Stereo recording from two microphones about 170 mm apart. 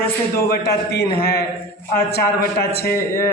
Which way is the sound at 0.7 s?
70° left (ahead or behind).